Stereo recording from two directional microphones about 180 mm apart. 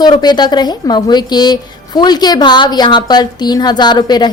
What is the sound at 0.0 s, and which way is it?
A woman's voice, 25° left (ahead or behind).